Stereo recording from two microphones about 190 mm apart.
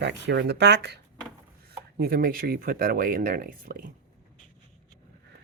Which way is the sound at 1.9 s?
55° right (ahead or behind).